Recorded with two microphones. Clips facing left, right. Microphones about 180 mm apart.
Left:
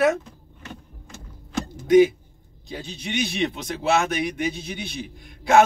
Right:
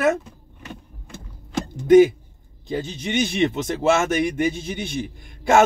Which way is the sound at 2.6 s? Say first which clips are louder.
Right 7 dB; 50° right (ahead or behind).